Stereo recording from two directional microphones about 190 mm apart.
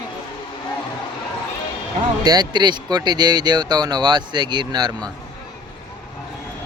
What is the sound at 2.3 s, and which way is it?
Speech, 20° right (ahead or behind).